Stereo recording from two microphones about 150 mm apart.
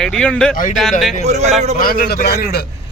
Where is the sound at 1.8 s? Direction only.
85° left.